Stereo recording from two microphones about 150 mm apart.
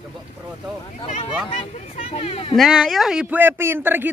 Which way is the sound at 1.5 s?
45° left (ahead or behind).